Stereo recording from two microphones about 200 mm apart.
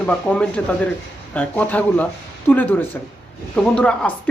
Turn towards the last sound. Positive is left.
turn(degrees=5)  # may be behind; listen again after turning